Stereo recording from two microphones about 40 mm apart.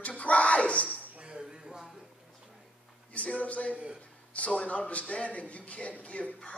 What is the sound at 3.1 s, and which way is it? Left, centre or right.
A man's voice, left.